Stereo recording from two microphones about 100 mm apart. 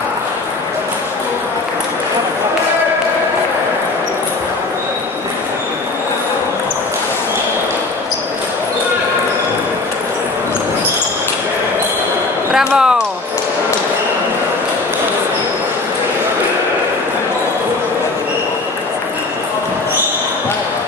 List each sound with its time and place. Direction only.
12.5 s basketball bounce: 5° right (ahead or behind)